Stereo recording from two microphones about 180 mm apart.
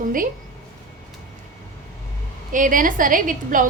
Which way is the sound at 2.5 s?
50° right (ahead or behind).